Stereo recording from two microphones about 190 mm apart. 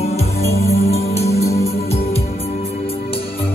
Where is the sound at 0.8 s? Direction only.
35° left (ahead or behind).